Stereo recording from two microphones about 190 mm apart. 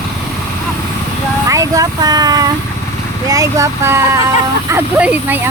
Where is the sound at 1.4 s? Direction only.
15° right (ahead or behind).